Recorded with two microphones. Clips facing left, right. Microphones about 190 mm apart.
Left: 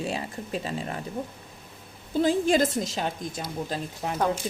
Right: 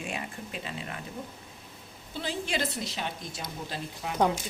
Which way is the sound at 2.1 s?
45° left (ahead or behind).